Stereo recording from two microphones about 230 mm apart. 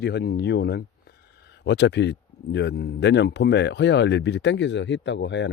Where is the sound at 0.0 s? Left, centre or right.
Left.